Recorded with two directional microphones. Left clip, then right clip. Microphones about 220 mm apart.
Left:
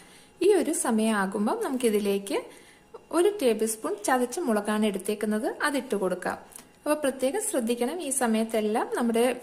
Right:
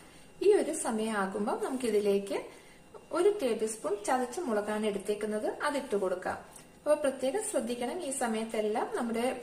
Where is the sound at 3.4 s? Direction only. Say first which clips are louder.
Left 6 dB; 50° left (ahead or behind).